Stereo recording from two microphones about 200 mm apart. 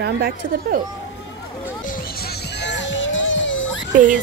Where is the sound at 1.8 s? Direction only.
50° left (ahead or behind); by 3.8 s 75° left (ahead or behind).